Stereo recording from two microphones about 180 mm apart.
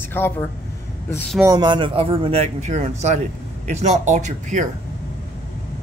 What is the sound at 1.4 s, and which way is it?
Speech, 20° right (ahead or behind).